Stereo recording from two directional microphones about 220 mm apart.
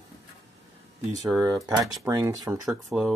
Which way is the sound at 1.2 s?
15° right (ahead or behind).